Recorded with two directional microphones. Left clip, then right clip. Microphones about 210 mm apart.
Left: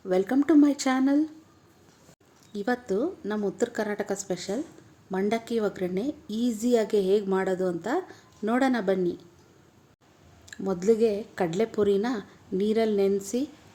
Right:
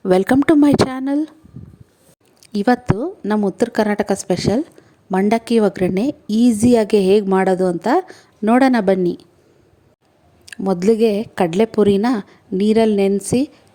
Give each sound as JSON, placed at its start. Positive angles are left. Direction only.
{"t": 0.0, "sound": "a woman's voice", "side_deg": -50}
{"t": 2.4, "sound": "a woman's voice", "side_deg": -45}
{"t": 10.4, "sound": "a woman's voice", "side_deg": -40}